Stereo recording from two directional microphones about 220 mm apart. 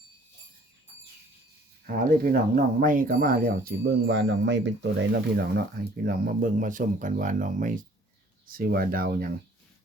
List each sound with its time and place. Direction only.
1.9 s speech: 40° right (ahead or behind)
5.4 s speech: 45° right (ahead or behind)